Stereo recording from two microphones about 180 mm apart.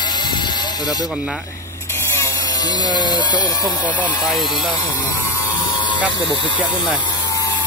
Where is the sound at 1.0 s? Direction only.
Centre (ahead or behind).